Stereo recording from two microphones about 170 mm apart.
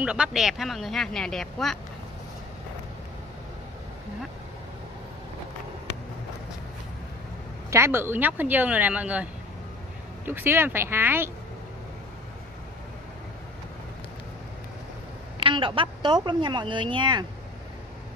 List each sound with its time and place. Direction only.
0.0 s speech: 5° right (ahead or behind)
7.7 s speech: 15° right (ahead or behind)
15.4 s speech: 30° right (ahead or behind)